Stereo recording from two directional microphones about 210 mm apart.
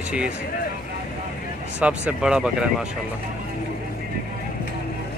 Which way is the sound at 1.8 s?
5° right (ahead or behind).